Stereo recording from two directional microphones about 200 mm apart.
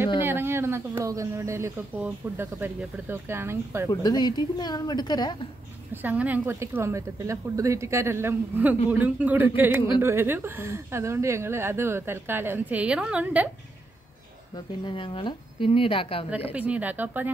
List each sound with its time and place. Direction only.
0.2 s speech: 10° right (ahead or behind)
3.9 s speech: 20° left (ahead or behind)
6.0 s speech: 10° right (ahead or behind)
14.9 s speech: 25° left (ahead or behind)
16.5 s speech: 5° right (ahead or behind)